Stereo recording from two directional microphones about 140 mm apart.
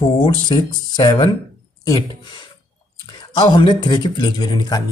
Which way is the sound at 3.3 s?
30° left (ahead or behind).